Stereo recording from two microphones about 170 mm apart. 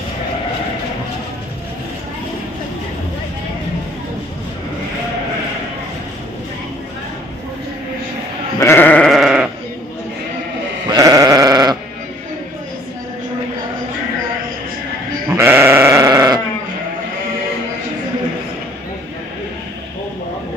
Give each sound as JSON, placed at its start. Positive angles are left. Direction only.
{"t": 8.6, "sound": "sheep", "side_deg": 15}
{"t": 10.9, "sound": "sheep", "side_deg": -20}
{"t": 15.4, "sound": "sheep", "side_deg": -15}